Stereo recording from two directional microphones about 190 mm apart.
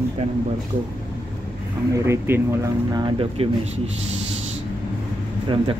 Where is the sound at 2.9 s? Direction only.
25° right (ahead or behind).